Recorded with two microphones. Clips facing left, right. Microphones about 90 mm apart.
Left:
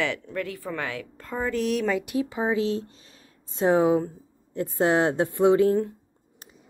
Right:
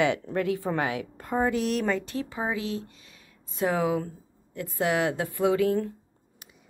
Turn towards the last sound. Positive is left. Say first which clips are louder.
# left 4 dB
turn(degrees=30)  # may be behind; listen again after turning